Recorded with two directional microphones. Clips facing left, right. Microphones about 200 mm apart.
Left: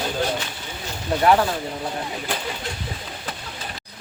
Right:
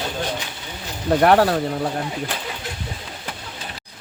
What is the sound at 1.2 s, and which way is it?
Speech, 60° right (ahead or behind).